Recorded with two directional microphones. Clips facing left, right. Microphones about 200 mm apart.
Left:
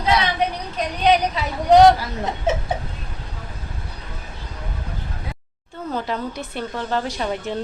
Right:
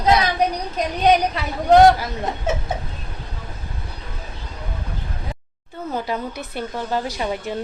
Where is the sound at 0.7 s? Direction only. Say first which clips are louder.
Right 1 dB; 45° right (ahead or behind).